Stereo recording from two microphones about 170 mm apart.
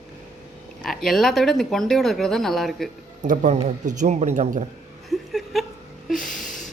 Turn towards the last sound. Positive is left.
turn(degrees=0)  # may be behind; listen again after turning